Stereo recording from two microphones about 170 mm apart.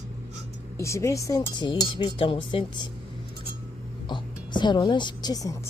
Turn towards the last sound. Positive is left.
turn(degrees=25)  # may be behind; listen again after turning